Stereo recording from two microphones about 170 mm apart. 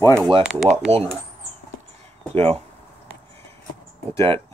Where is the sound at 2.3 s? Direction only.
35° right (ahead or behind).